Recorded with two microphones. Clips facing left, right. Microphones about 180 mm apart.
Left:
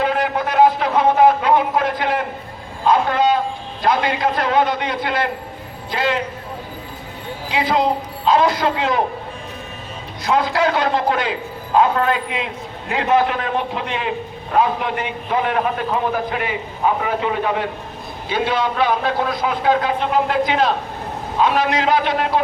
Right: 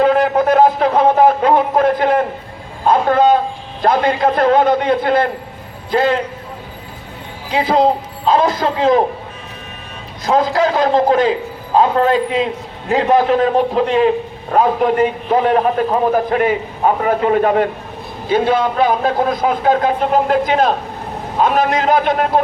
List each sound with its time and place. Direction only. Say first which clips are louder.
0.0 s a sound: right 7 dB; 45° right (ahead or behind)
3.1 s train: right 5 dB; 50° right (ahead or behind)
3.8 s a man's voice: right 4 dB; 50° right (ahead or behind)
8.6 s a man's voice: right 1 dB; 40° right (ahead or behind)
10.2 s a man's voice: right 3 dB; 40° right (ahead or behind)